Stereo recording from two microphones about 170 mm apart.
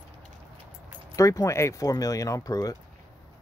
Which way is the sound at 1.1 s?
20° left (ahead or behind).